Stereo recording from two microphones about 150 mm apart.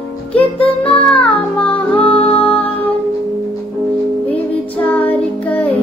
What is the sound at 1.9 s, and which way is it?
Music, 40° left (ahead or behind).